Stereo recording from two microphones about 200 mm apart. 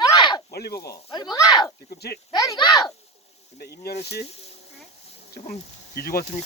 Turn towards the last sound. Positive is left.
turn(degrees=50)  # may be behind; listen again after turning